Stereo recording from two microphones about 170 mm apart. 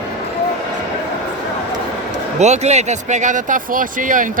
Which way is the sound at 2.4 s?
40° right (ahead or behind).